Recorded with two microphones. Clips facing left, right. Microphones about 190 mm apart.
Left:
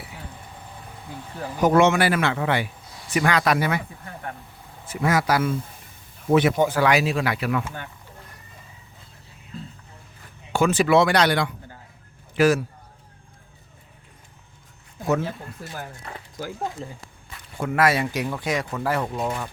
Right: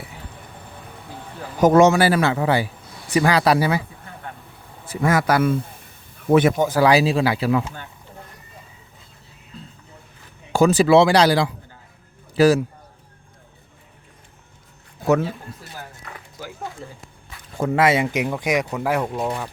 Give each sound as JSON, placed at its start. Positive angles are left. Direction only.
{"t": 1.6, "sound": "a man's voice", "side_deg": -40}
{"t": 5.0, "sound": "speech", "side_deg": -55}
{"t": 6.7, "sound": "a man's voice", "side_deg": -35}
{"t": 10.5, "sound": "a man's voice", "side_deg": -40}
{"t": 15.6, "sound": "speech", "side_deg": 50}
{"t": 17.6, "sound": "speech", "side_deg": -30}